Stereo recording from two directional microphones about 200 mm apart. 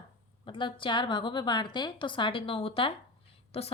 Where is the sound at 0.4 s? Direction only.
25° left (ahead or behind).